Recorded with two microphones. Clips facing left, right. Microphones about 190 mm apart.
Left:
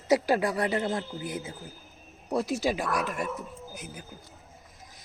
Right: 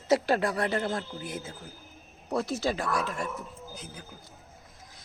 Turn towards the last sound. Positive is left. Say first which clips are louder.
# left 1 dB
turn(degrees=20)  # may be behind; listen again after turning